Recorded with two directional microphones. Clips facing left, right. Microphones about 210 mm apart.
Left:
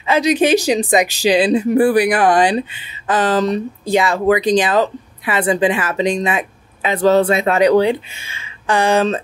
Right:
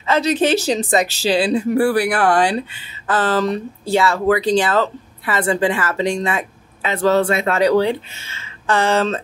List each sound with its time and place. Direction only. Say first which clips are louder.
0.0 s speech: left 2 dB; 15° left (ahead or behind)